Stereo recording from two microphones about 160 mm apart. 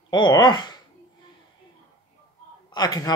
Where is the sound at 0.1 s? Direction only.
25° left (ahead or behind).